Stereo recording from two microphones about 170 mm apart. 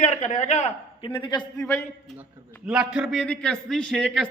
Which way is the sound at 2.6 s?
5° right (ahead or behind).